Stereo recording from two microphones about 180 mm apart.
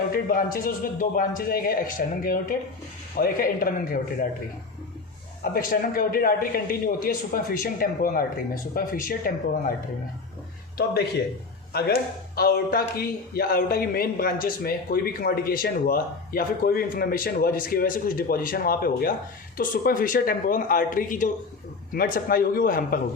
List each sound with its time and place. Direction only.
0.1 s a man's voice: 55° left (ahead or behind)
5.4 s a man's voice: 50° left (ahead or behind)
12.4 s a man's voice: 60° left (ahead or behind)